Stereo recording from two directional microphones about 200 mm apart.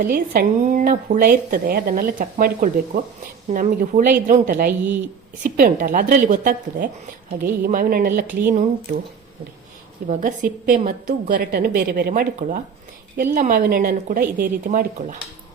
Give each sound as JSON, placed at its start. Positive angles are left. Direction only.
{"t": 0.1, "sound": "a woman's voice", "side_deg": -40}
{"t": 8.3, "sound": "speech", "side_deg": -10}
{"t": 10.1, "sound": "a woman's voice", "side_deg": -40}